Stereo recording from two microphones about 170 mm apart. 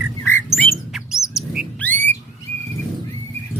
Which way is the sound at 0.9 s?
5° right (ahead or behind).